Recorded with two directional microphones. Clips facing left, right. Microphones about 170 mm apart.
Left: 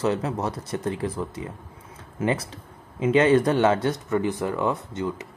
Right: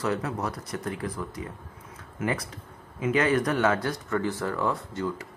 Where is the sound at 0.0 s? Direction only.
25° left (ahead or behind).